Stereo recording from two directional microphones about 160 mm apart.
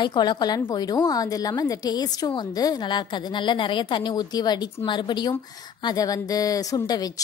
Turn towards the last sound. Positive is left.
turn(degrees=25)  # may be behind; listen again after turning